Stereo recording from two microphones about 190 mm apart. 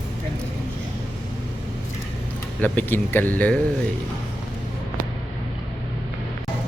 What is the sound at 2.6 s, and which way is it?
Speech, 10° left (ahead or behind).